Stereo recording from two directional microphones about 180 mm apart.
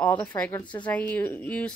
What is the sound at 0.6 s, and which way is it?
Speech, 25° left (ahead or behind).